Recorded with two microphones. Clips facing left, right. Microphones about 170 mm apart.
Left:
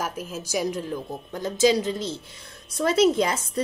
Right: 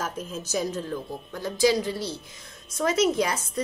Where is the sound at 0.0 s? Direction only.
10° left (ahead or behind).